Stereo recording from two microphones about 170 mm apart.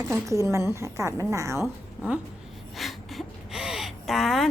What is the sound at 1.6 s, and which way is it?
A woman's voice, 5° right (ahead or behind).